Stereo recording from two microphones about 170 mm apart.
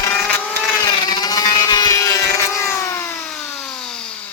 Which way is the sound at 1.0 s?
25° left (ahead or behind).